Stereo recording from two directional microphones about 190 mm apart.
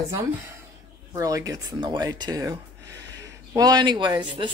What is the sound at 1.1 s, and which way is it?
A woman's voice, 15° right (ahead or behind).